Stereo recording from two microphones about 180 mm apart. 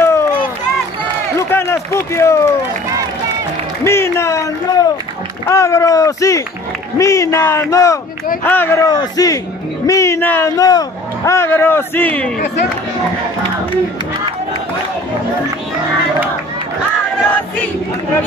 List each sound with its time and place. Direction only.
0.0 s run: 15° left (ahead or behind)
1.5 s speech: 15° left (ahead or behind)
3.8 s a man's voice: 15° left (ahead or behind)